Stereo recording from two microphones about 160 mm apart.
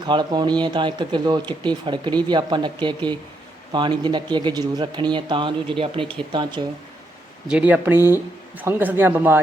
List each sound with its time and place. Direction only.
0.0 s speech: 30° right (ahead or behind)
7.4 s speech: 5° right (ahead or behind)